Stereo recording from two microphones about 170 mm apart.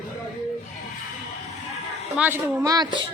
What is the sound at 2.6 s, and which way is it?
Speech, 25° right (ahead or behind).